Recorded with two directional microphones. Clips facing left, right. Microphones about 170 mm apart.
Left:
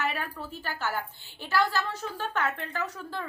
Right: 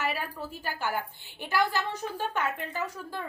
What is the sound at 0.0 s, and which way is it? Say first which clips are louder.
A woman's voice: even; 10° right (ahead or behind).